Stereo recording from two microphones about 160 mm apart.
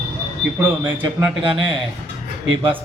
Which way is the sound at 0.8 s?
10° right (ahead or behind).